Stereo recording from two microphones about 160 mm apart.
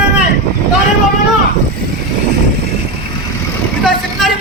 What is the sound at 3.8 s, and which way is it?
Vehicle, centre (ahead or behind).